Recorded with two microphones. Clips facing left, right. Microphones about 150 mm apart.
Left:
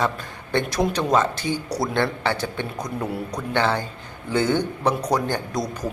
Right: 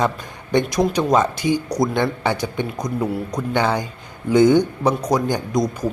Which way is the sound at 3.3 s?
15° right (ahead or behind).